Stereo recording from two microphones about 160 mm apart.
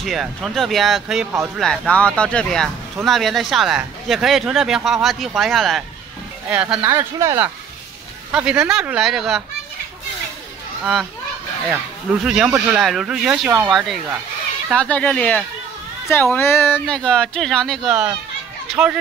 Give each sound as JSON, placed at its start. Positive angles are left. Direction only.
{"t": 0.0, "sound": "speech", "side_deg": 0}
{"t": 11.7, "sound": "a child's voice", "side_deg": -5}